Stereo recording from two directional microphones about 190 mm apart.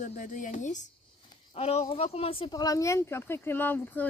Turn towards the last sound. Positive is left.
turn(degrees=10)  # may be behind; listen again after turning